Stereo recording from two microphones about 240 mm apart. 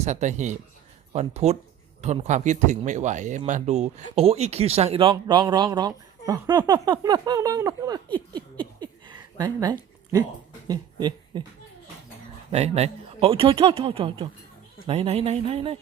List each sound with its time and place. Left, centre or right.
0.0 s speech: right
8.3 s a sound: centre
10.7 s speech: centre
12.5 s speech: right